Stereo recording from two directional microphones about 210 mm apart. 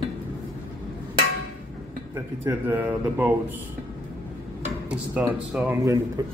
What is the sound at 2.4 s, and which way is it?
Speech, 10° right (ahead or behind).